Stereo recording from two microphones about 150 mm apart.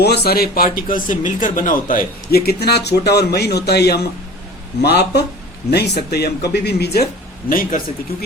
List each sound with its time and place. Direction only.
0.0 s speech: 90° left
7.5 s a man's voice: 70° left (ahead or behind)